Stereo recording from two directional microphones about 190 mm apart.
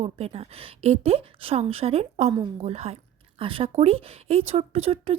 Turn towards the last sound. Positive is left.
turn(degrees=-30)  # may be behind; listen again after turning